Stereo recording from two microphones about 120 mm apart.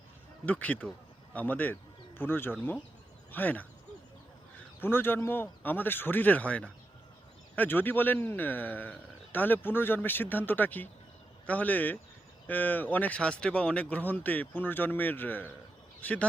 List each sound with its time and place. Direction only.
0.4 s a man's voice: 10° left (ahead or behind)
4.8 s speech: 20° left (ahead or behind)